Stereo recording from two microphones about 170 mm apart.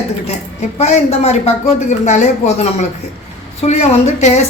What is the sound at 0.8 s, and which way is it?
A woman's voice, 40° left (ahead or behind).